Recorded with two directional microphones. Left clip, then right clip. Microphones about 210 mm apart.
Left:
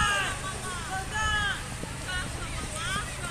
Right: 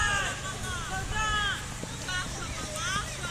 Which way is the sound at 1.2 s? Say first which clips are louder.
Left 1 dB; 55° left (ahead or behind).